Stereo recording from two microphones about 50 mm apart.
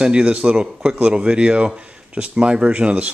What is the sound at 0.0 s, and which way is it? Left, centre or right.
Speech, right.